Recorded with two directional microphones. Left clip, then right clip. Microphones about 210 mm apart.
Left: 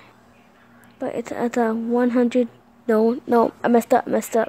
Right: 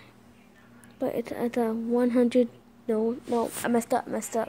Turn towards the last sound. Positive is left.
turn(degrees=25)  # may be behind; listen again after turning